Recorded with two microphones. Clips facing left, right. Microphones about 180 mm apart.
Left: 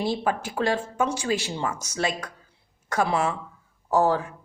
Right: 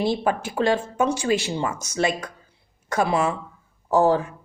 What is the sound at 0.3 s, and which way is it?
Speech, 25° right (ahead or behind).